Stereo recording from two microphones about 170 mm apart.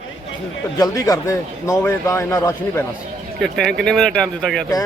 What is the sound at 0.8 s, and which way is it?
A man's voice, 20° left (ahead or behind).